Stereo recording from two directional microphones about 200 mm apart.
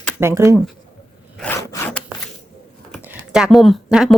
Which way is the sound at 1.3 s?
10° left (ahead or behind).